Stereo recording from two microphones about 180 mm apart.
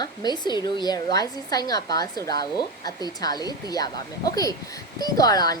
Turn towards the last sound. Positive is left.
turn(degrees=20)  # may be behind; listen again after turning